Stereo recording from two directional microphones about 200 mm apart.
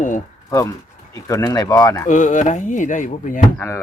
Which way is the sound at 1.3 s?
20° left (ahead or behind).